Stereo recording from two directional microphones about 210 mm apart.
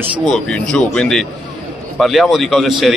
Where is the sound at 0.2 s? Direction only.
Centre (ahead or behind).